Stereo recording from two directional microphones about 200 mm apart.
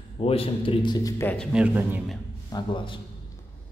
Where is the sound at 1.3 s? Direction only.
Centre (ahead or behind).